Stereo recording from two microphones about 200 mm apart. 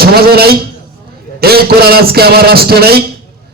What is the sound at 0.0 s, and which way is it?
A man's voice, 50° right (ahead or behind).